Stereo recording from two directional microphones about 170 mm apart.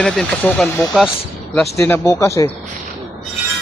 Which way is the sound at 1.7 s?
10° left (ahead or behind).